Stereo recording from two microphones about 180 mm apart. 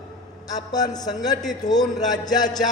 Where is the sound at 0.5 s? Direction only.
20° left (ahead or behind).